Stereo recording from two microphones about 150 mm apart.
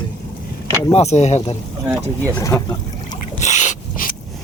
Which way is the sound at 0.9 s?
45° left (ahead or behind).